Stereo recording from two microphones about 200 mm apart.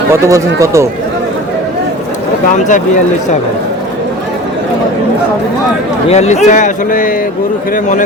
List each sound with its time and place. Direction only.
0.1 s speech: 15° right (ahead or behind)
6.1 s a man's voice: 35° left (ahead or behind)